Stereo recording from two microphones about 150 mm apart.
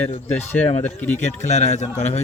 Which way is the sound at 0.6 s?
50° left (ahead or behind).